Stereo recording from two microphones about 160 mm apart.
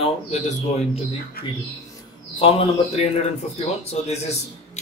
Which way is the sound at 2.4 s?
35° left (ahead or behind).